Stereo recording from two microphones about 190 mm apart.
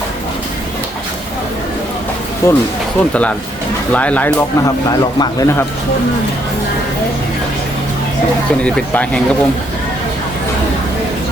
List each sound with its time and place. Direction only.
2.4 s speech: 15° left (ahead or behind)
8.6 s speech: 5° left (ahead or behind)